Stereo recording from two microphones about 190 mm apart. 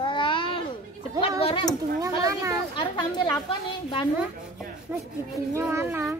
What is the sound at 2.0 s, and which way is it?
Speech, 15° right (ahead or behind).